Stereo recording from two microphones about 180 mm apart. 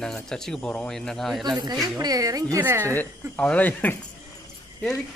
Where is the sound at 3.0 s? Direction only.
5° left (ahead or behind).